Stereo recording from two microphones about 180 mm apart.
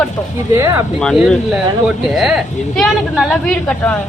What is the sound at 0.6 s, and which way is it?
Speech, 15° right (ahead or behind).